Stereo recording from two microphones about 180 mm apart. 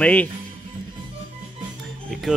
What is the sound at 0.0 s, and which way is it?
Speech, 10° left (ahead or behind).